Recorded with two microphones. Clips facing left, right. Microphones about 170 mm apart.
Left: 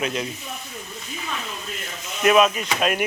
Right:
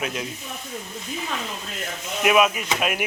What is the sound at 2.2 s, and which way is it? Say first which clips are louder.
Speech: left 2 dB; 10° right (ahead or behind).